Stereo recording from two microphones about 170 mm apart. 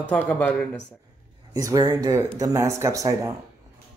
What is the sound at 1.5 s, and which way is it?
Speech, 20° right (ahead or behind).